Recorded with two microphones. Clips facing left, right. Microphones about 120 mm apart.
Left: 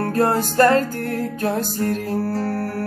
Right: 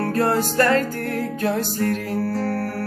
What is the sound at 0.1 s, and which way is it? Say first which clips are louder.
Music: left 2 dB; 35° left (ahead or behind).